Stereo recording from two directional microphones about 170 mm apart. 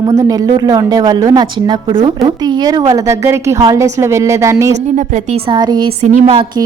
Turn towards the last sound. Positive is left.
turn(degrees=-35)  # may be behind; listen again after turning